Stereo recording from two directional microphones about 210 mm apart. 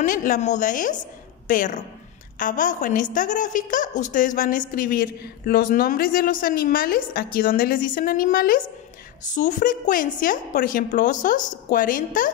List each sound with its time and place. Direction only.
0.0 s a woman's voice: 40° left (ahead or behind)